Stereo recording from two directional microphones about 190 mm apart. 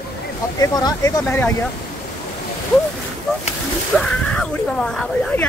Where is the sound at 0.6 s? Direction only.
20° left (ahead or behind).